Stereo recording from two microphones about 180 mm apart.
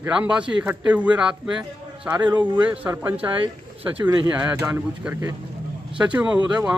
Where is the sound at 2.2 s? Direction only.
25° right (ahead or behind).